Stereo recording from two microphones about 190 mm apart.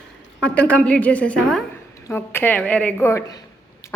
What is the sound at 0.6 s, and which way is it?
A woman's voice, 5° left (ahead or behind).